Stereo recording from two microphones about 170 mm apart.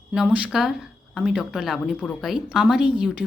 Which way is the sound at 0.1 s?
5° right (ahead or behind).